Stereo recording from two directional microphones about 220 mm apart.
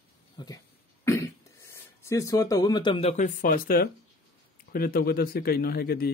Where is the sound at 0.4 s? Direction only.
20° left (ahead or behind).